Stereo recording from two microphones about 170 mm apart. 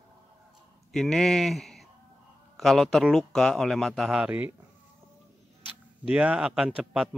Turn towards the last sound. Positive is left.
turn(degrees=-5)  # may be behind; listen again after turning